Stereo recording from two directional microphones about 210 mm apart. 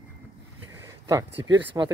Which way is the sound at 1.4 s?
20° right (ahead or behind).